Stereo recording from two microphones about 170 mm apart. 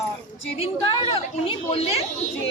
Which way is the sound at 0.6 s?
30° left (ahead or behind).